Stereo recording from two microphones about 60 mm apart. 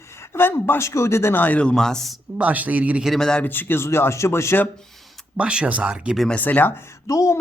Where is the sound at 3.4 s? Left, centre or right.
Left.